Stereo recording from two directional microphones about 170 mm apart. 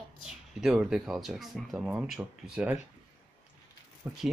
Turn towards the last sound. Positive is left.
turn(degrees=-10)  # may be behind; listen again after turning